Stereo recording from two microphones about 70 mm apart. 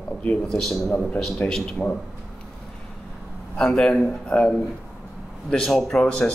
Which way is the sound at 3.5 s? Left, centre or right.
Centre.